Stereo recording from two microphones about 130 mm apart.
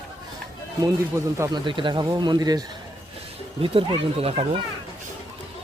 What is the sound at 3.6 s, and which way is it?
Speech, 45° right (ahead or behind).